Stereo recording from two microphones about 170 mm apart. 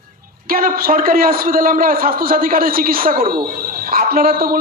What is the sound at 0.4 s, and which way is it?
A man's voice, 60° right (ahead or behind).